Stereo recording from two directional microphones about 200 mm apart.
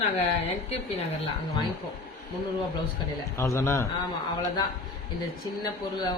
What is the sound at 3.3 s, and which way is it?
Speech, 15° left (ahead or behind).